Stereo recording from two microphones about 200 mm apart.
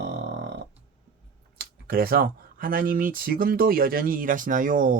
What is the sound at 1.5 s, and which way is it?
Speech, 50° right (ahead or behind).